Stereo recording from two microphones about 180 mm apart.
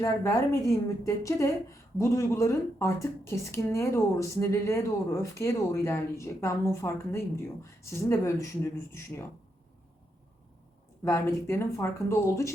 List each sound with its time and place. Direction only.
0.0 s a woman's voice: 15° left (ahead or behind)
11.0 s a woman's voice: 15° left (ahead or behind)